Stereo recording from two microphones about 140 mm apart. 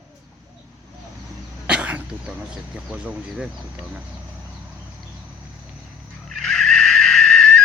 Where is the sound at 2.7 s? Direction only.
10° right (ahead or behind).